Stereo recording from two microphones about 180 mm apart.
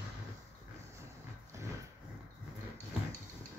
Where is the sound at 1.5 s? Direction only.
15° right (ahead or behind).